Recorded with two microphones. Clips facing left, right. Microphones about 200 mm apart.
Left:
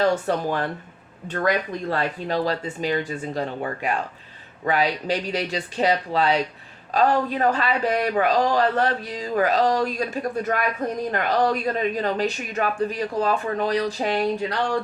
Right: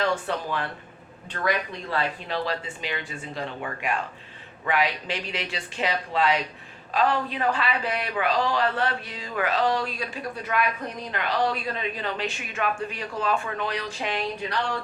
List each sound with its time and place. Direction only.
0.0 s speech: 40° left (ahead or behind)